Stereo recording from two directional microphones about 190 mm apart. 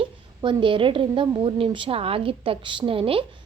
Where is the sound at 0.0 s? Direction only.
25° right (ahead or behind).